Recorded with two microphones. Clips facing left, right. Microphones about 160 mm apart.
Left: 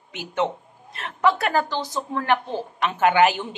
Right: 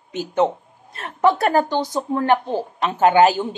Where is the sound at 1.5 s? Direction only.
15° right (ahead or behind).